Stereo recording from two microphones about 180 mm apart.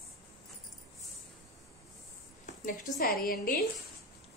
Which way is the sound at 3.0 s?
55° left (ahead or behind).